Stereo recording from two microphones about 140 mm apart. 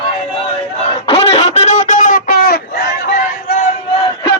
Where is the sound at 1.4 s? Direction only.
55° left (ahead or behind); by 2.5 s 90° left.